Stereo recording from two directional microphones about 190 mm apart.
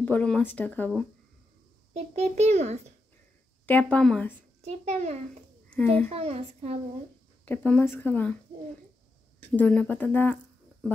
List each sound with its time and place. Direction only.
0.0 s speech: 5° left (ahead or behind)
2.0 s a child's voice: 35° right (ahead or behind)
3.6 s speech: 5° left (ahead or behind)
4.6 s a child's voice: 35° right (ahead or behind)
7.4 s speech: 10° left (ahead or behind)
9.4 s speech: 5° left (ahead or behind)